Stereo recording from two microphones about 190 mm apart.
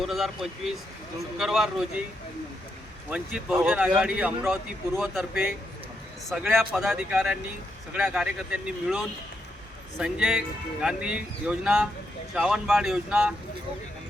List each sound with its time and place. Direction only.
0.0 s speech: centre (ahead or behind)
3.1 s speech: 5° right (ahead or behind)